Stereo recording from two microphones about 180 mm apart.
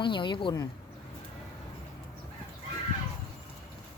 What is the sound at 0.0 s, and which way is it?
Speech, 25° left (ahead or behind).